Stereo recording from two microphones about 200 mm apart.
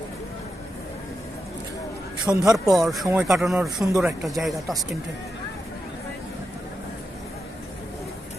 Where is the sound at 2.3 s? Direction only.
10° right (ahead or behind).